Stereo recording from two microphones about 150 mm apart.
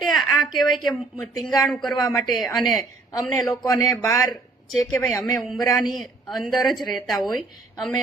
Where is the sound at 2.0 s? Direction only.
25° left (ahead or behind).